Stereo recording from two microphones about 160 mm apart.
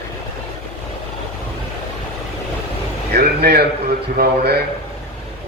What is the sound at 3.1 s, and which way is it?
A man's voice, 80° right.